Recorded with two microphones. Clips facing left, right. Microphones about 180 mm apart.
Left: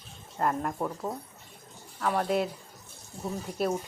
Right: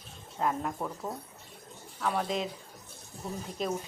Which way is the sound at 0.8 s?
15° left (ahead or behind).